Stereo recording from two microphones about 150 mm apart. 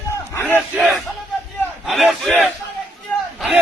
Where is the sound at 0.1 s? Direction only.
20° left (ahead or behind).